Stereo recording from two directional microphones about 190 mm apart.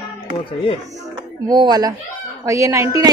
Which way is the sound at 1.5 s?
20° right (ahead or behind).